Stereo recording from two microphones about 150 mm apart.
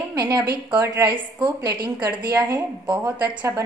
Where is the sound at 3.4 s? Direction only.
15° right (ahead or behind).